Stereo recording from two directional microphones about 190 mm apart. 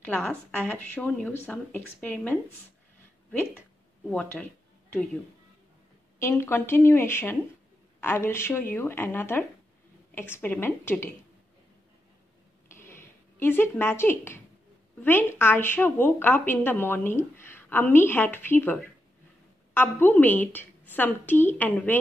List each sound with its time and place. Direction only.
0.2 s a woman's voice: 10° left (ahead or behind)
4.1 s speech: 5° left (ahead or behind)
6.1 s a woman's voice: 15° left (ahead or behind)
12.6 s a sound: 15° left (ahead or behind)
15.0 s a woman's voice: 10° left (ahead or behind)